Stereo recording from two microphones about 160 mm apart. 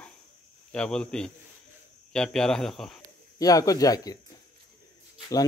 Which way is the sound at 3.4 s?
20° left (ahead or behind).